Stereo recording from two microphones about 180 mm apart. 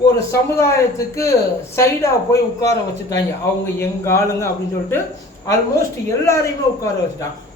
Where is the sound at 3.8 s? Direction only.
15° left (ahead or behind).